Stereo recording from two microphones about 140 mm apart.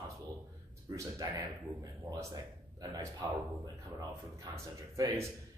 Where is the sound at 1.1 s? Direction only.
25° right (ahead or behind).